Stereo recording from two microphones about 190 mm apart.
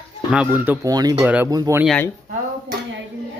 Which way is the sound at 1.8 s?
5° left (ahead or behind).